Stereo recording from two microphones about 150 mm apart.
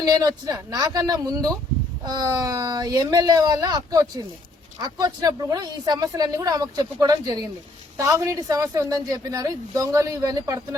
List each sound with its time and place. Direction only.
0.0 s a woman's voice: 25° right (ahead or behind)